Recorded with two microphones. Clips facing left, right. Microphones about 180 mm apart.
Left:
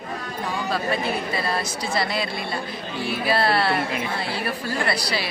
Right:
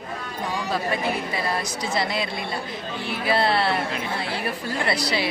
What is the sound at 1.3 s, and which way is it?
A woman's voice, 15° right (ahead or behind).